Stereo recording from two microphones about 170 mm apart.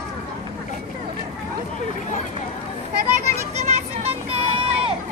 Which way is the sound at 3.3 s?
40° right (ahead or behind).